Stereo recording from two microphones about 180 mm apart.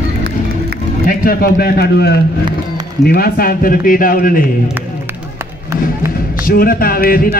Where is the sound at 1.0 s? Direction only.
55° left (ahead or behind).